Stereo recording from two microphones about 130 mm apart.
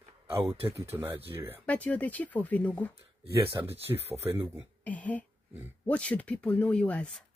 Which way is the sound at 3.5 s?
15° right (ahead or behind).